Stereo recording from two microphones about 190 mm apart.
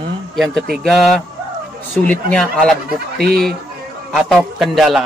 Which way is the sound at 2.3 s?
5° left (ahead or behind).